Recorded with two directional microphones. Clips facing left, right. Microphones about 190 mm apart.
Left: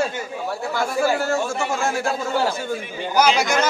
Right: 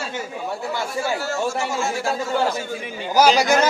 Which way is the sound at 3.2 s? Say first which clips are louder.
Right 3 dB; 40° right (ahead or behind).